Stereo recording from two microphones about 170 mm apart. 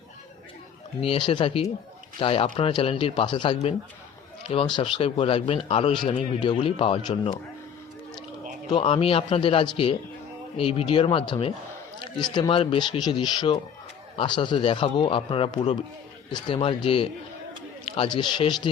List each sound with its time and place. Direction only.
1.0 s a man's voice: 30° left (ahead or behind)
8.7 s a man's voice: 35° left (ahead or behind)